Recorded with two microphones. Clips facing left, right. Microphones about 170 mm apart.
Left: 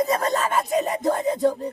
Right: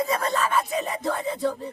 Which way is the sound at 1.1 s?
45° left (ahead or behind).